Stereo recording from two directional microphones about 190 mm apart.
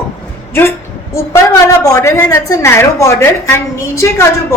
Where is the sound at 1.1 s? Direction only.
15° left (ahead or behind).